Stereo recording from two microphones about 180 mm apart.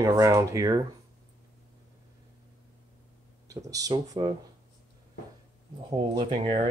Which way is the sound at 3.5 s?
20° right (ahead or behind).